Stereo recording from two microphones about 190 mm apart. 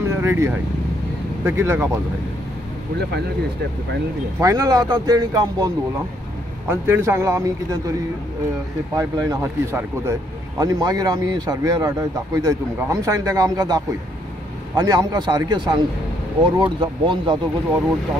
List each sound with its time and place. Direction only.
0.0 s vehicle: 15° right (ahead or behind)
1.4 s speech: 15° right (ahead or behind)
4.4 s a man's voice: 20° right (ahead or behind)
6.7 s speech: 15° right (ahead or behind)
8.9 s a man's voice: 20° right (ahead or behind)